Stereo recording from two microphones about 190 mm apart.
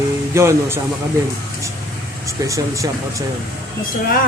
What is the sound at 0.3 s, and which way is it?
Speech, 15° right (ahead or behind).